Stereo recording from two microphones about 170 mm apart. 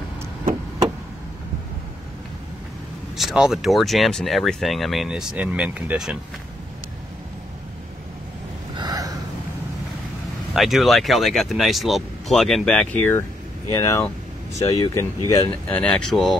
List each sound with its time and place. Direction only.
3.2 s speech: centre (ahead or behind)
8.7 s a sound: 25° right (ahead or behind)
10.5 s speech: centre (ahead or behind); by 15.4 s 20° left (ahead or behind)
15.7 s speech: 5° left (ahead or behind)